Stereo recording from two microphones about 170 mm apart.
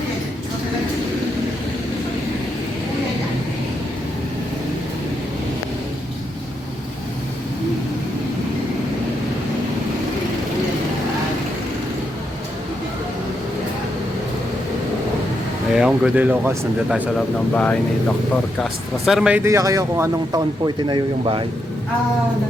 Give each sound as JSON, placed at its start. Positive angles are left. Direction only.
{"t": 15.7, "sound": "speech", "side_deg": -5}
{"t": 17.2, "sound": "speech", "side_deg": 10}
{"t": 18.6, "sound": "speech", "side_deg": 0}
{"t": 19.5, "sound": "a man's voice", "side_deg": -20}